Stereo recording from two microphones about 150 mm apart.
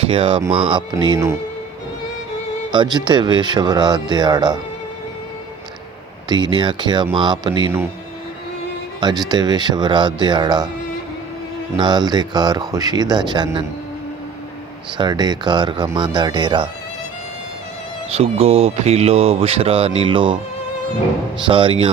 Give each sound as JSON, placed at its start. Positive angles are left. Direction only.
{"t": 0.0, "sound": "speech", "side_deg": -40}
{"t": 2.7, "sound": "speech", "side_deg": -30}
{"t": 6.2, "sound": "speech", "side_deg": -30}
{"t": 9.0, "sound": "speech", "side_deg": -30}
{"t": 11.8, "sound": "speech", "side_deg": -30}
{"t": 14.9, "sound": "speech", "side_deg": -30}
{"t": 18.1, "sound": "speech", "side_deg": -40}